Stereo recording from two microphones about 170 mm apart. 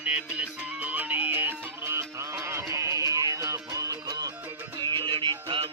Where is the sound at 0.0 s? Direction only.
5° right (ahead or behind).